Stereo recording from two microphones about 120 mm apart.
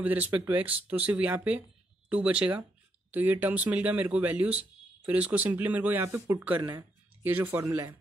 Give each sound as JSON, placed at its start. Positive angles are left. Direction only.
{"t": 0.0, "sound": "speech", "side_deg": -15}